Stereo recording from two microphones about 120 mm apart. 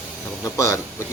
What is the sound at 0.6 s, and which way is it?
Speech, 25° left (ahead or behind).